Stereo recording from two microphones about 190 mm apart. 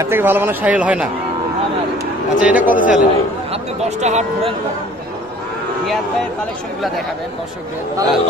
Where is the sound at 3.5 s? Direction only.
35° right (ahead or behind).